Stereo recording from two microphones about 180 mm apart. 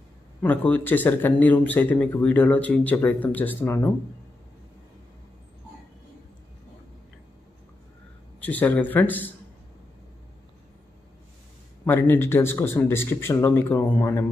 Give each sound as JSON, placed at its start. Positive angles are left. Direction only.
{"t": 0.4, "sound": "speech", "side_deg": 10}
{"t": 8.4, "sound": "speech", "side_deg": 10}
{"t": 11.8, "sound": "speech", "side_deg": 10}